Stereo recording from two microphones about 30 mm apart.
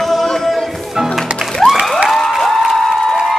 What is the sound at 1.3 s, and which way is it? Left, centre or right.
Music, right.